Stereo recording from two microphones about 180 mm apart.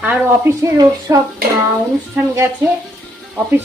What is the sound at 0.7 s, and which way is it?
Speech, 20° right (ahead or behind).